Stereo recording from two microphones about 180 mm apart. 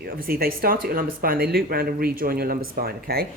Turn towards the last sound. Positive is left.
turn(degrees=-55)  # may be behind; listen again after turning